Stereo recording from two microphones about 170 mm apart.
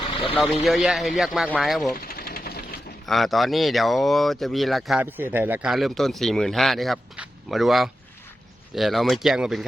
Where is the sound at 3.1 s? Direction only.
Centre (ahead or behind).